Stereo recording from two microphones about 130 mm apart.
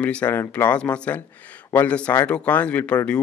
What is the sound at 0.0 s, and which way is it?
Speech, 10° left (ahead or behind).